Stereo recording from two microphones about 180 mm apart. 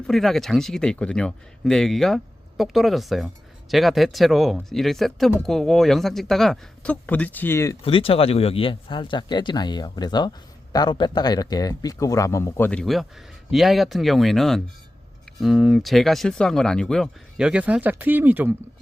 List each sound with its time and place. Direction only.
0.1 s speech: centre (ahead or behind)
7.8 s speech: 30° left (ahead or behind); by 18.5 s 10° right (ahead or behind)